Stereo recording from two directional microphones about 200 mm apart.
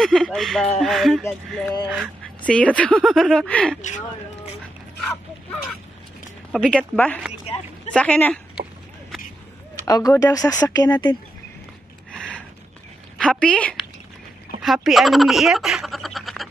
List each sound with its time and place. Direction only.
0.0 s speech: centre (ahead or behind)
6.5 s speech: centre (ahead or behind)
9.8 s speech: 20° left (ahead or behind)
12.1 s a sound: 5° left (ahead or behind)
13.2 s speech: 5° left (ahead or behind)